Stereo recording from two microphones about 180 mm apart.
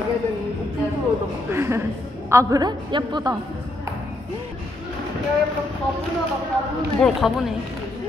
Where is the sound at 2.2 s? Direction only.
20° right (ahead or behind).